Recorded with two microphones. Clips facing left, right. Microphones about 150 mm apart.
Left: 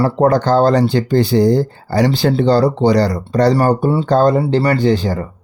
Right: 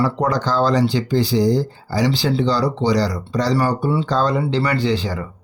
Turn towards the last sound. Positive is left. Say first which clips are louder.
# left 5 dB
turn(degrees=50)  # may be behind; listen again after turning